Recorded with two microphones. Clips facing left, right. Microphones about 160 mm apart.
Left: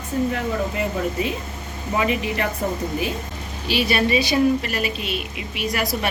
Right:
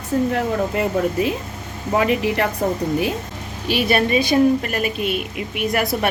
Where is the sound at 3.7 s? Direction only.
55° right (ahead or behind).